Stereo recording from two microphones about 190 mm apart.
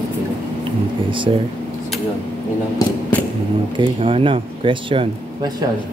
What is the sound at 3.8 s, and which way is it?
Speech, 30° right (ahead or behind).